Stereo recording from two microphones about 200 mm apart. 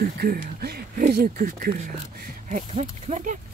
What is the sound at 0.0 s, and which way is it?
Speech, 50° right (ahead or behind).